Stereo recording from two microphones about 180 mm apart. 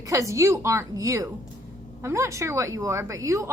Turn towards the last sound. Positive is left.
turn(degrees=-15)  # may be behind; listen again after turning